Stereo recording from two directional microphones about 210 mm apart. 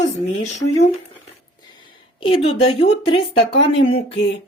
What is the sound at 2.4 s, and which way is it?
Speech, 25° left (ahead or behind).